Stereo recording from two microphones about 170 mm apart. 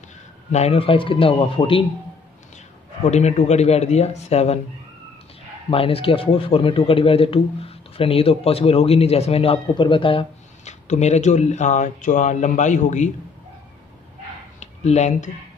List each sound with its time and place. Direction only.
0.5 s a man's voice: 40° left (ahead or behind)
3.1 s a man's voice: 40° left (ahead or behind)
5.7 s a man's voice: 35° left (ahead or behind)
14.6 s speech: 40° left (ahead or behind)